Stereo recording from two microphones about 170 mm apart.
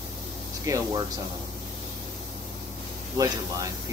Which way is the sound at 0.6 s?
20° right (ahead or behind).